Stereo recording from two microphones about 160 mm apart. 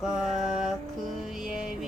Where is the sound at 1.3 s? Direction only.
5° right (ahead or behind).